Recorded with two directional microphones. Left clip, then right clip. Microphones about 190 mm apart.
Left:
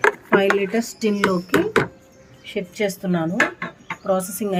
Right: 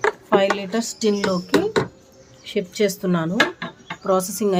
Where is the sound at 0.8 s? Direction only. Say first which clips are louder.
Even; 5° left (ahead or behind).